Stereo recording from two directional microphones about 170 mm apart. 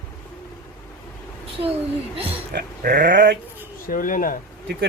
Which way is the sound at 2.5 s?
60° right (ahead or behind).